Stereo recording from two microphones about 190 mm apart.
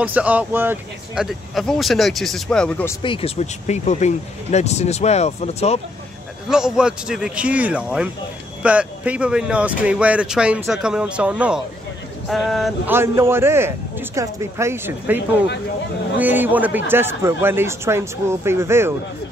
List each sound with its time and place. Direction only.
0.0 s speech: 10° right (ahead or behind); by 3.0 s 10° left (ahead or behind)
3.0 s speech: 30° left (ahead or behind)
6.5 s speech: 5° right (ahead or behind)
12.9 s speech: 10° right (ahead or behind)
16.2 s speech: 10° right (ahead or behind)